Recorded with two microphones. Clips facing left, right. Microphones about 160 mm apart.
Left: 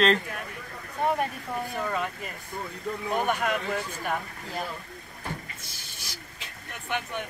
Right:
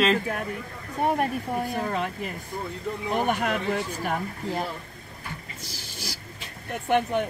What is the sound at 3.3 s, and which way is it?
Speech, 50° right (ahead or behind).